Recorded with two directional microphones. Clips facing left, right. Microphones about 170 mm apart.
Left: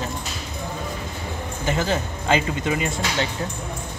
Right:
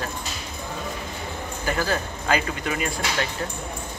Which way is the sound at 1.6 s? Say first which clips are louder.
Left 2 dB; 20° left (ahead or behind).